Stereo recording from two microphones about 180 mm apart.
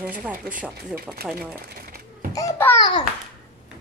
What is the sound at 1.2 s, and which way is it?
Speech, 60° right (ahead or behind).